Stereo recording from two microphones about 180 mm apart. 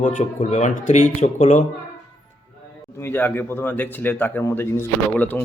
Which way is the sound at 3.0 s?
10° left (ahead or behind).